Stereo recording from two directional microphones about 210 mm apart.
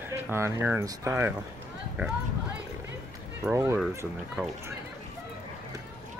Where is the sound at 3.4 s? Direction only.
10° right (ahead or behind).